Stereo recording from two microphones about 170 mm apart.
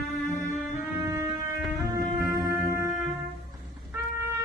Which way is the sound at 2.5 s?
15° right (ahead or behind).